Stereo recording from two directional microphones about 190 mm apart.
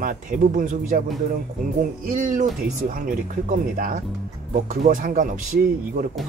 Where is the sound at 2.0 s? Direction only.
40° right (ahead or behind).